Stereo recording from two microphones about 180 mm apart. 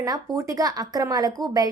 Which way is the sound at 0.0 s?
20° right (ahead or behind).